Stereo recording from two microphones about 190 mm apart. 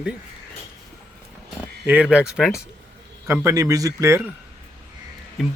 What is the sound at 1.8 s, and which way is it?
Speech, 10° right (ahead or behind).